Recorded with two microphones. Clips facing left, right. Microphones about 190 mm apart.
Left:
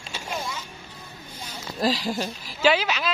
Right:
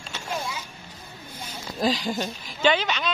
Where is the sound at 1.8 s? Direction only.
Centre (ahead or behind).